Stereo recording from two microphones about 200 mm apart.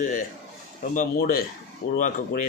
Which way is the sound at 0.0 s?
40° left (ahead or behind).